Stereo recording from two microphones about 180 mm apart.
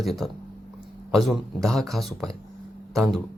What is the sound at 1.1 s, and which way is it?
Speech, centre (ahead or behind).